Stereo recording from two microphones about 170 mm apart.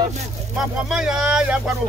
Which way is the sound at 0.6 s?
5° right (ahead or behind).